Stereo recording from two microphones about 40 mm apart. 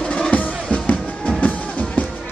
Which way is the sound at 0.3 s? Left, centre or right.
Left.